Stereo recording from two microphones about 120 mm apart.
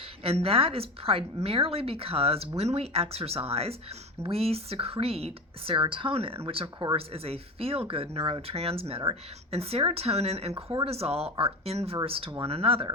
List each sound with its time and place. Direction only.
0.2 s a woman's voice: 55° right (ahead or behind)